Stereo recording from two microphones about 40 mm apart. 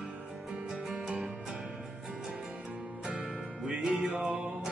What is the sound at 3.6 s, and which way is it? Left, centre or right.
Music, centre.